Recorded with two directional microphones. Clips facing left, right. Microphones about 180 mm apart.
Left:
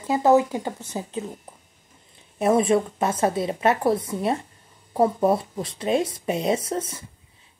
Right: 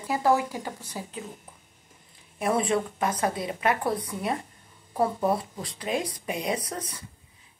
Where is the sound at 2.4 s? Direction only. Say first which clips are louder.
Left 6 dB; 25° left (ahead or behind).